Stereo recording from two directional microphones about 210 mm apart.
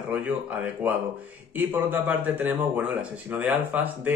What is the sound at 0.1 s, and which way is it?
Speech, 5° right (ahead or behind).